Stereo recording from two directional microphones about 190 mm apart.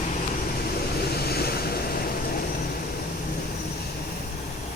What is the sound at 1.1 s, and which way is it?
Vehicle, 55° left (ahead or behind).